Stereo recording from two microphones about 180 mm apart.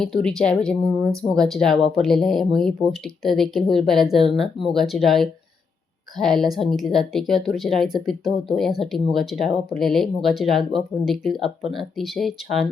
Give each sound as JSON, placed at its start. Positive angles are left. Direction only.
{"t": 0.0, "sound": "speech", "side_deg": 0}